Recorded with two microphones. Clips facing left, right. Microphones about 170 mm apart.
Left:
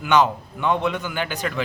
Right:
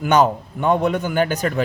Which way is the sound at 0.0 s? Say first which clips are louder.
Right 3 dB; 45° right (ahead or behind).